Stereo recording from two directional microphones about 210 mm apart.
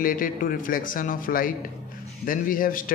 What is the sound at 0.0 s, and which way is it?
A man's voice, 40° left (ahead or behind).